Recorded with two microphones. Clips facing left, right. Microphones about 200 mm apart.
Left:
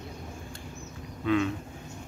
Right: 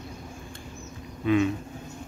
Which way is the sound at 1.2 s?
15° right (ahead or behind).